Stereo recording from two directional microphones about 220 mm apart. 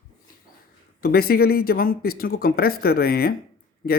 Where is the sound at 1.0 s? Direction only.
45° left (ahead or behind).